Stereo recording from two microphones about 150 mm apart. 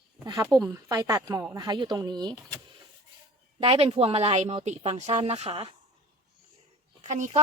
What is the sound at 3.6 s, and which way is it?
Speech, 40° right (ahead or behind).